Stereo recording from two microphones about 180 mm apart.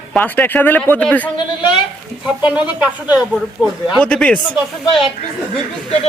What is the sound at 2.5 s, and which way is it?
Speech, 5° right (ahead or behind).